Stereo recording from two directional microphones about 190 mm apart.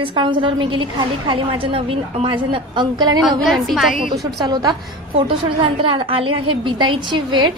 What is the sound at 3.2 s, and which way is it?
Speech, centre (ahead or behind).